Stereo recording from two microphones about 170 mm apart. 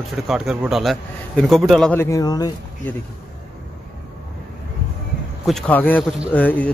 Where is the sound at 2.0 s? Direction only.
20° left (ahead or behind).